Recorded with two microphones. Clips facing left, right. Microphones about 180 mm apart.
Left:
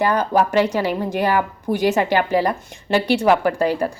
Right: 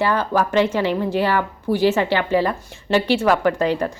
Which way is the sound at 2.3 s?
15° left (ahead or behind).